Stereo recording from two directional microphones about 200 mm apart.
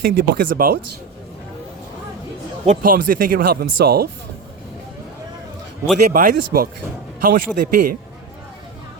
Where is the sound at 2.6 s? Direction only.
40° right (ahead or behind).